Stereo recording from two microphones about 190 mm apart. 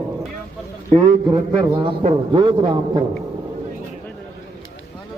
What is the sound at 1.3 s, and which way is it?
A man's voice, 25° right (ahead or behind).